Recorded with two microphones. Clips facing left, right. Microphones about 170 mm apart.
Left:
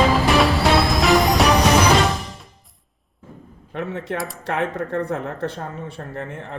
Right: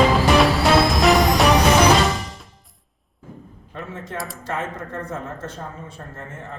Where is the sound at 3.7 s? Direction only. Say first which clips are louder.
Left 7 dB; 65° left (ahead or behind).